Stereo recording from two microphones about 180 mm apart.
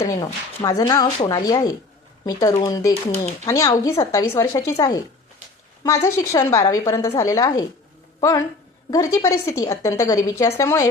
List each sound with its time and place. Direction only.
0.0 s a woman's voice: 20° left (ahead or behind)